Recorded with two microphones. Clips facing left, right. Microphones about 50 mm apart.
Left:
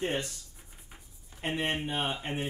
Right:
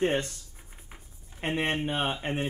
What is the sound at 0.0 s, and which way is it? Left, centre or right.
Speech, right.